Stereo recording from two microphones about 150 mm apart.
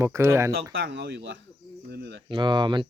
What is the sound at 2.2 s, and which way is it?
Speech, 30° right (ahead or behind).